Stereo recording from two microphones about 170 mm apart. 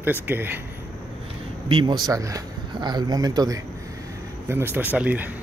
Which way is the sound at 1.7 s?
30° right (ahead or behind).